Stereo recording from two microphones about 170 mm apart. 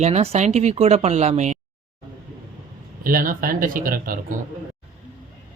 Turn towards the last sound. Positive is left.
turn(degrees=-55)  # may be behind; listen again after turning